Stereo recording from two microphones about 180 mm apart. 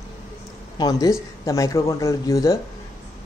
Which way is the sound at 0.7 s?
20° left (ahead or behind).